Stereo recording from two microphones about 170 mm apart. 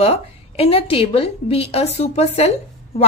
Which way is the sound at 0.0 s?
35° left (ahead or behind).